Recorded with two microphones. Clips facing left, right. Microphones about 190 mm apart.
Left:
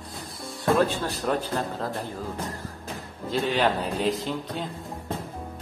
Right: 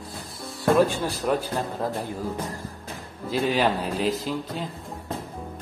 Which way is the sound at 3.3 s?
5° right (ahead or behind).